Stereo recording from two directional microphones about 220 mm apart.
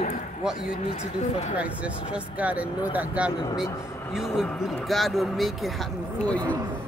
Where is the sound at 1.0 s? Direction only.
30° left (ahead or behind).